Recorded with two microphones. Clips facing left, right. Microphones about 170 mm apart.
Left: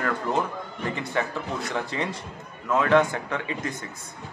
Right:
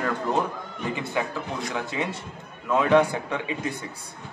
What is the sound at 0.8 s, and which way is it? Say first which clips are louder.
A man's voice: even; 10° right (ahead or behind).